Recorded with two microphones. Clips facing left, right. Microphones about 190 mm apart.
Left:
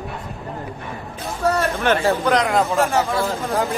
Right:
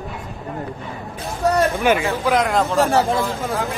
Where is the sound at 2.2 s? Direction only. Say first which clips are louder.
Even; centre (ahead or behind).